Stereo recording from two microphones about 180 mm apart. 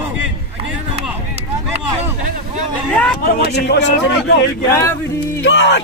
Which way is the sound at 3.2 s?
65° left (ahead or behind).